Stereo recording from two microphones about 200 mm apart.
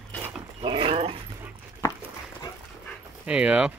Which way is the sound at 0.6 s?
25° right (ahead or behind).